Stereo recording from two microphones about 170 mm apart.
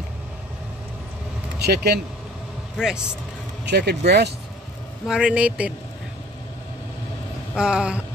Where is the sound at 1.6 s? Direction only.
70° right (ahead or behind).